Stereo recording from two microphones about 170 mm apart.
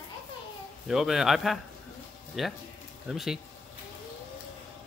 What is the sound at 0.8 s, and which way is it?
A man's voice, centre (ahead or behind).